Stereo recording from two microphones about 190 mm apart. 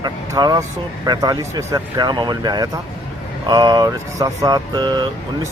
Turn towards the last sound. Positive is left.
turn(degrees=-25)  # may be behind; listen again after turning